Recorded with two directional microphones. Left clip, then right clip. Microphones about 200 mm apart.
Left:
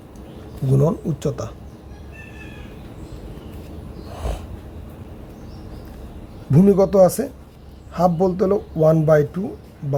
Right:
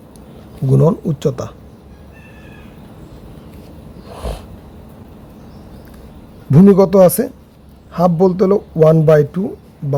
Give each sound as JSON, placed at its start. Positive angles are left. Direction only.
{"t": 0.7, "sound": "speech", "side_deg": -30}
{"t": 4.1, "sound": "snort", "side_deg": -30}
{"t": 6.5, "sound": "a man's voice", "side_deg": -30}